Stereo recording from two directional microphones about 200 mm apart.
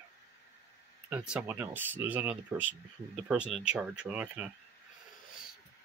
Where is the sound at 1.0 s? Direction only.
5° right (ahead or behind).